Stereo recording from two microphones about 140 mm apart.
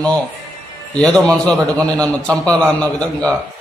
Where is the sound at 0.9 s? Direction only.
10° left (ahead or behind).